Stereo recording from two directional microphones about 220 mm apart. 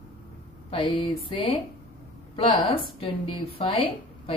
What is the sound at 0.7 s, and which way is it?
A woman's voice, 25° left (ahead or behind).